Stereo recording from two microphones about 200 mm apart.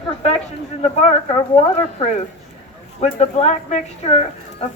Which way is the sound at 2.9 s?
30° left (ahead or behind).